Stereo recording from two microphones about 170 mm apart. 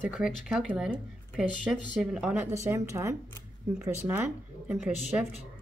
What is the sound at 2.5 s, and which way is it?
Speech, 15° right (ahead or behind).